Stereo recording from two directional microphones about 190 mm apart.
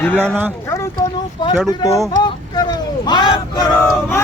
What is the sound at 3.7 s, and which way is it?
Speech, 5° left (ahead or behind).